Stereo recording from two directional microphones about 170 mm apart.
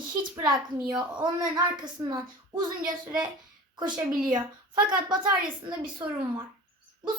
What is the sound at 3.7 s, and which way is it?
A woman's voice, 25° right (ahead or behind).